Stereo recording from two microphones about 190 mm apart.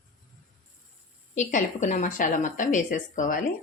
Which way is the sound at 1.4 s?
40° left (ahead or behind).